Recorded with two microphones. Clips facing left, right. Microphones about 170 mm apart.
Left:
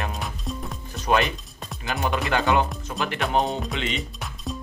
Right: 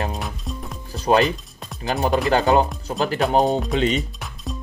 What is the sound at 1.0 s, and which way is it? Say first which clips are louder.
Speech: right 5 dB; 35° right (ahead or behind).